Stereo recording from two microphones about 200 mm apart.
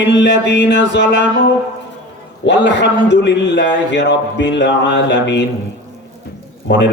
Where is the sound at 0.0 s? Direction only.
60° left (ahead or behind).